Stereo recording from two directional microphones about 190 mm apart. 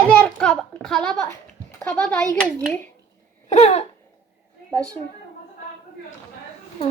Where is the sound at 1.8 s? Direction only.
5° left (ahead or behind).